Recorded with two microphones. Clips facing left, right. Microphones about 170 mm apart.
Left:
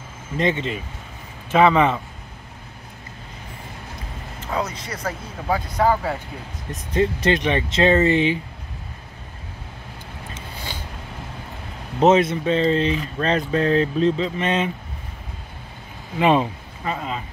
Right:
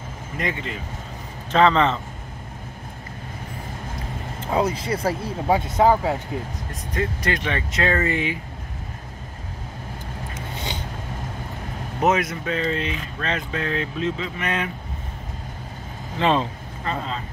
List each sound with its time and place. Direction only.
0.4 s speech: 25° left (ahead or behind)
1.5 s speech: 10° left (ahead or behind)
4.4 s speech: 30° right (ahead or behind)
6.7 s speech: 25° left (ahead or behind)
12.0 s speech: 25° left (ahead or behind)
16.2 s speech: 15° left (ahead or behind)